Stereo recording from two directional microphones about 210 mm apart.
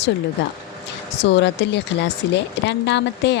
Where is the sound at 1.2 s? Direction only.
55° left (ahead or behind).